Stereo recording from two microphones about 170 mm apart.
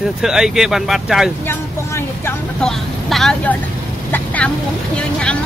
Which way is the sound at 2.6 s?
Centre (ahead or behind).